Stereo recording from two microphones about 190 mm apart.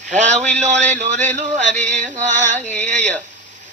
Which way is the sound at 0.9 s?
40° right (ahead or behind).